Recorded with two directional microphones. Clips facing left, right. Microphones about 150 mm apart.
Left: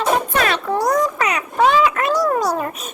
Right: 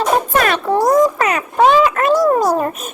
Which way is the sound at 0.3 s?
50° right (ahead or behind).